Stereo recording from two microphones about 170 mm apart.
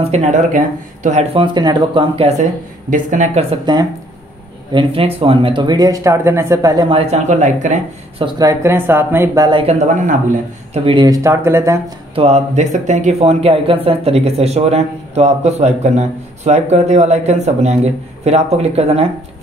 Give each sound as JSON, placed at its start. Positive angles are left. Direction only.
{"t": 0.0, "sound": "speech", "side_deg": -40}
{"t": 1.3, "sound": "speech", "side_deg": -30}
{"t": 2.9, "sound": "speech", "side_deg": -45}
{"t": 3.7, "sound": "speech", "side_deg": -25}
{"t": 8.2, "sound": "speech", "side_deg": -20}
{"t": 10.9, "sound": "speech", "side_deg": -25}
{"t": 12.2, "sound": "speech", "side_deg": -40}